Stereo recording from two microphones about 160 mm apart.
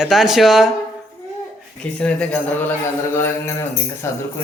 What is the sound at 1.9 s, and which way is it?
Speech, 5° left (ahead or behind).